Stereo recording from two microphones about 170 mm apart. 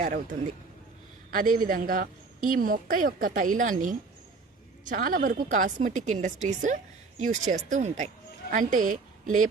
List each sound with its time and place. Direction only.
0.0 s a woman's voice: 45° right (ahead or behind)